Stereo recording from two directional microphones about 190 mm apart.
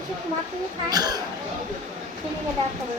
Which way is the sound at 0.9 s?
20° right (ahead or behind).